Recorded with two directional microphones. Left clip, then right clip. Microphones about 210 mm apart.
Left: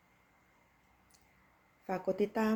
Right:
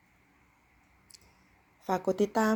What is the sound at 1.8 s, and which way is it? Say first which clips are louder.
Speech: right 5 dB; 35° right (ahead or behind).